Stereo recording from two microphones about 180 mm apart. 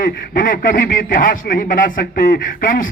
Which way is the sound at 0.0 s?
50° left (ahead or behind).